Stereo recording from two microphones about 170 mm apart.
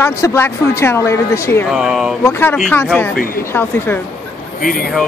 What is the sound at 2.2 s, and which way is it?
Speech, 15° left (ahead or behind).